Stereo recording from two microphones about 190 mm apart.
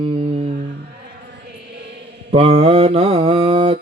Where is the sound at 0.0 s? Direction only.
30° right (ahead or behind).